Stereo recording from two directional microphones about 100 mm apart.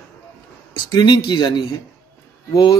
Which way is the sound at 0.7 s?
50° left (ahead or behind).